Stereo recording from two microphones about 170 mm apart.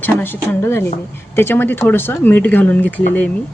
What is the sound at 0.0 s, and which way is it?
A woman's voice, 15° left (ahead or behind).